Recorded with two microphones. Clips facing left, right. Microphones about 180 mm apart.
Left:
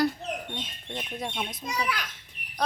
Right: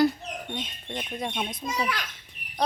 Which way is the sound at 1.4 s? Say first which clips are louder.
Right 3 dB; centre (ahead or behind).